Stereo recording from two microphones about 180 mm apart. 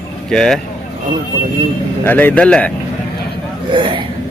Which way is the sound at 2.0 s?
10° left (ahead or behind).